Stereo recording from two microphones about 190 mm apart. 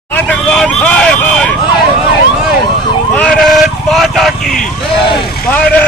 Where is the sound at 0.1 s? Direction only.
5° left (ahead or behind).